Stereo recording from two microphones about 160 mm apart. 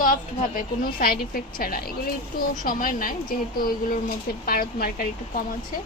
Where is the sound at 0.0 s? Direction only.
65° left (ahead or behind).